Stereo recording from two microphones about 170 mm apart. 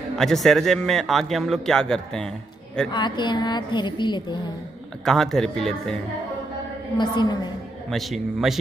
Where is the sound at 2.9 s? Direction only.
25° left (ahead or behind).